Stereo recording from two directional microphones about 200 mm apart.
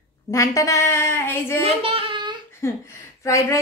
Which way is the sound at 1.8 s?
25° right (ahead or behind).